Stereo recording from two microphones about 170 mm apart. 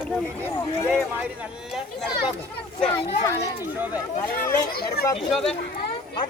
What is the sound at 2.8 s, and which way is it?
Speech, 10° left (ahead or behind).